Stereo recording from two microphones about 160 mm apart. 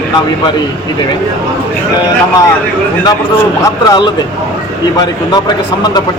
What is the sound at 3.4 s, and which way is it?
Speech, 25° left (ahead or behind).